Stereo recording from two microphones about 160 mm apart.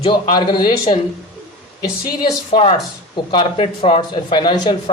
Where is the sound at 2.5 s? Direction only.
35° left (ahead or behind).